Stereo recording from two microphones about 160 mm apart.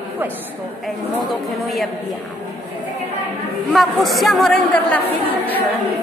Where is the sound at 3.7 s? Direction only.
Centre (ahead or behind).